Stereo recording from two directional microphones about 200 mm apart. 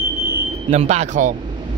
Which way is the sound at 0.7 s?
35° right (ahead or behind).